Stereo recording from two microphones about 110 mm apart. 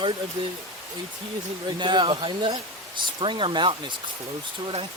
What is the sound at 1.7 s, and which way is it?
Speech, 45° right (ahead or behind).